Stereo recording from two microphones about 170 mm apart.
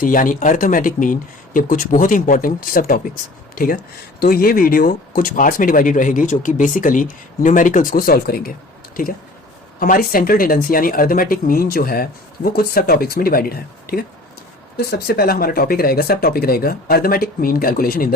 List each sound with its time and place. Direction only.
0.0 s speech: 50° left (ahead or behind)
9.8 s speech: 55° left (ahead or behind)